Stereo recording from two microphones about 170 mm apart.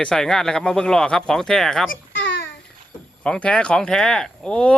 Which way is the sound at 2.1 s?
90° left.